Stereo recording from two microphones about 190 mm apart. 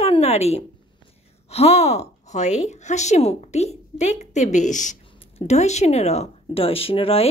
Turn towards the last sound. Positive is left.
turn(degrees=30)  # may be behind; listen again after turning